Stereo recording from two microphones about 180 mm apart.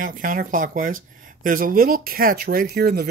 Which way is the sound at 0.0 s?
50° right (ahead or behind).